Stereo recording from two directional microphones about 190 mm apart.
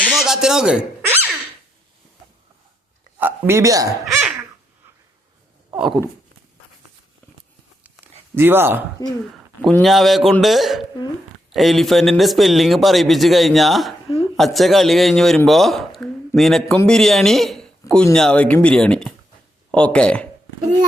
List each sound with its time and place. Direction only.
0.0 s squeak: centre (ahead or behind)
3.2 s speech: 10° right (ahead or behind)
4.0 s babbling: centre (ahead or behind)
5.7 s speech: 10° right (ahead or behind)
8.4 s speech: 10° right (ahead or behind)
9.0 s speech: 20° left (ahead or behind)
9.6 s speech: 5° left (ahead or behind)